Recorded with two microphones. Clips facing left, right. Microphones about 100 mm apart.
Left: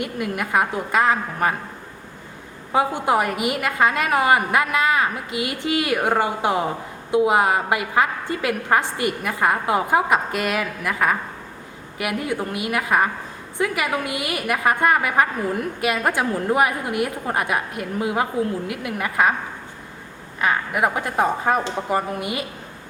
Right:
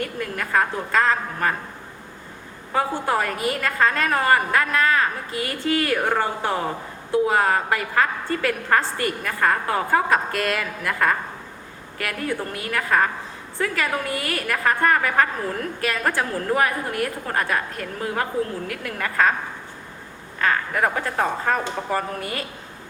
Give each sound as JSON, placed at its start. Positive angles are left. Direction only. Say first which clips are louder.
{"t": 0.0, "sound": "a woman's voice", "louder": "left 2 dB", "side_deg": 15}
{"t": 2.7, "sound": "a woman's voice", "louder": "left 3 dB", "side_deg": 15}
{"t": 20.4, "sound": "a woman's voice", "louder": "left 1 dB", "side_deg": 15}